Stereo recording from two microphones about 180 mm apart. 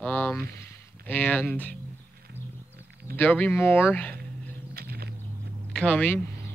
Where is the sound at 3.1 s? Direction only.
10° left (ahead or behind).